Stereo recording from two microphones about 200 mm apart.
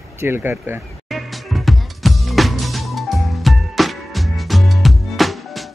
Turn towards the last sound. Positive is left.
turn(degrees=0)  # may be behind; listen again after turning